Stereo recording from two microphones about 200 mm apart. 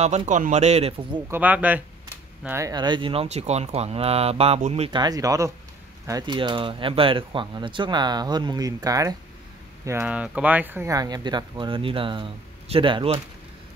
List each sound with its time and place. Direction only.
0.0 s a man's voice: 35° right (ahead or behind)
1.3 s speech: 10° right (ahead or behind); by 13.2 s 25° right (ahead or behind)